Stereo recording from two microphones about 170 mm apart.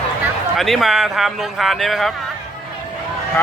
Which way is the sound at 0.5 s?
Centre (ahead or behind).